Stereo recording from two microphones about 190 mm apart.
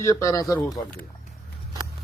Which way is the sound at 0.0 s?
15° left (ahead or behind).